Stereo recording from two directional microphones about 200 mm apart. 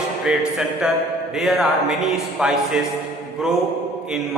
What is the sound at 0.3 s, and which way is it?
A man's voice, 5° right (ahead or behind).